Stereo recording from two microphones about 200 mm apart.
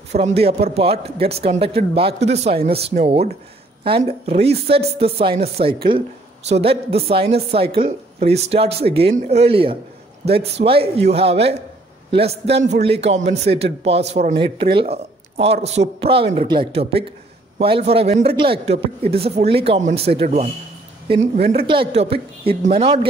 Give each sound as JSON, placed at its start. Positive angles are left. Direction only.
{"t": 0.1, "sound": "speech", "side_deg": -30}